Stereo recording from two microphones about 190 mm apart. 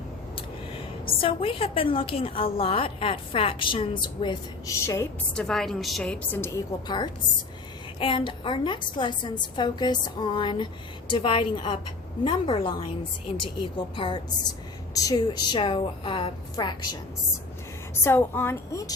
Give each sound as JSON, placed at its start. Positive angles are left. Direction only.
{"t": 1.2, "sound": "a woman's voice", "side_deg": 30}
{"t": 13.7, "sound": "a woman's voice", "side_deg": 25}
{"t": 18.0, "sound": "a woman's voice", "side_deg": 10}